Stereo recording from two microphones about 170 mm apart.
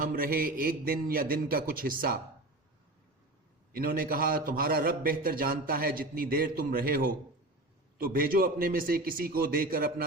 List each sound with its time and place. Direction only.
0.0 s a man's voice: 60° right (ahead or behind)
3.7 s a man's voice: 60° right (ahead or behind)